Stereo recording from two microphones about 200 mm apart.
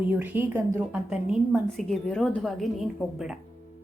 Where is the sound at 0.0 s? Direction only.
10° right (ahead or behind).